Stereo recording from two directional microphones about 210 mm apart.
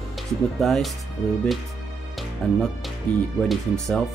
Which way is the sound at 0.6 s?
Centre (ahead or behind).